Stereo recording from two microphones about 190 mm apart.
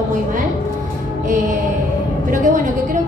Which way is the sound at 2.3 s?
45° right (ahead or behind).